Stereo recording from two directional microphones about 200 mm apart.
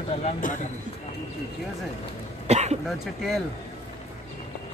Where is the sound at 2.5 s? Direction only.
35° right (ahead or behind).